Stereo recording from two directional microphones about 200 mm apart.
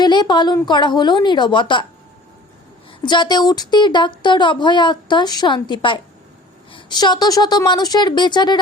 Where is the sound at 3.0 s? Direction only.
20° left (ahead or behind).